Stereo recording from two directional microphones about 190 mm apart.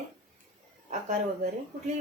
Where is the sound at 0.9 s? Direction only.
40° right (ahead or behind).